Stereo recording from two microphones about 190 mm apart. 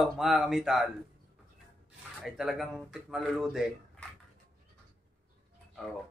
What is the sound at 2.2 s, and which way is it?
Speech, centre (ahead or behind).